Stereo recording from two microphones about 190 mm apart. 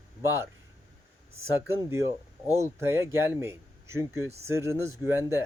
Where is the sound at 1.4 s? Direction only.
15° right (ahead or behind).